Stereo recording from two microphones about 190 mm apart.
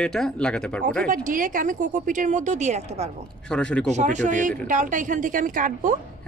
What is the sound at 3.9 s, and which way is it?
Speech, 40° right (ahead or behind).